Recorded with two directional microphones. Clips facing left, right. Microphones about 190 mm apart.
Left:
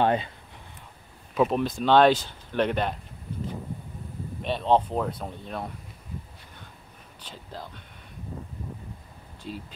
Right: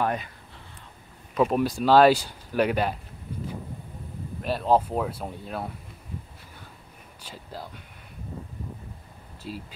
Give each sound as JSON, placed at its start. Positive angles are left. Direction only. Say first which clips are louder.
{"t": 0.0, "sound": "speech", "louder": "left 4 dB", "side_deg": 25}
{"t": 1.3, "sound": "speech", "louder": "right 1 dB", "side_deg": 0}
{"t": 4.4, "sound": "speech", "louder": "even", "side_deg": -5}
{"t": 7.2, "sound": "speech", "louder": "right 1 dB", "side_deg": -10}
{"t": 9.4, "sound": "speech", "louder": "even", "side_deg": -5}